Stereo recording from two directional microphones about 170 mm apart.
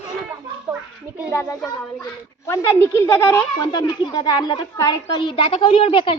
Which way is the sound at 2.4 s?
15° left (ahead or behind).